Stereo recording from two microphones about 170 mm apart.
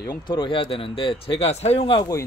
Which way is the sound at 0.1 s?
25° left (ahead or behind).